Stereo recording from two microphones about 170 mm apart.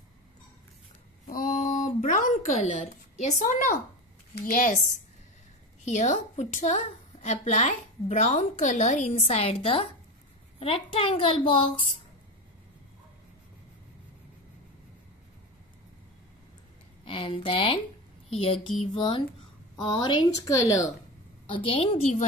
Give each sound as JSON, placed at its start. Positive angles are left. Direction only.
{"t": 1.2, "sound": "a sound", "side_deg": 50}
{"t": 3.3, "sound": "a woman's voice", "side_deg": 50}
{"t": 5.9, "sound": "a woman's voice", "side_deg": 45}
{"t": 17.0, "sound": "a woman's voice", "side_deg": 30}
{"t": 21.5, "sound": "a woman's voice", "side_deg": 30}